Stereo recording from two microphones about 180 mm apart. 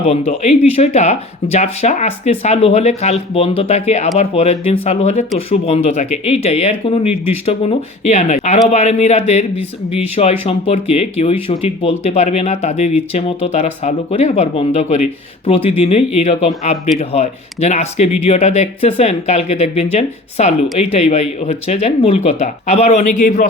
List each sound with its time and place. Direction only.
0.1 s speech: 40° left (ahead or behind)